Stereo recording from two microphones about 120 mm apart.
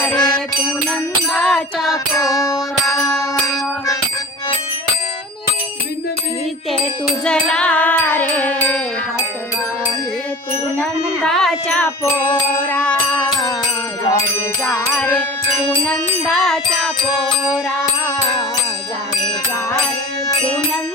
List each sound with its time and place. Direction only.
0.0 s music: 10° left (ahead or behind)
1.9 s music: 30° left (ahead or behind)
7.3 s music: 5° left (ahead or behind)
11.3 s speech: 5° left (ahead or behind)
12.6 s music: 10° left (ahead or behind)
14.8 s music: 10° left (ahead or behind)